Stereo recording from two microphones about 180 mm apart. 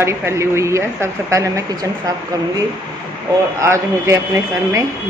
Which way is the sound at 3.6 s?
15° right (ahead or behind).